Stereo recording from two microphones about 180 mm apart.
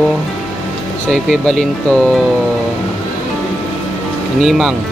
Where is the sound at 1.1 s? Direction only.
Centre (ahead or behind).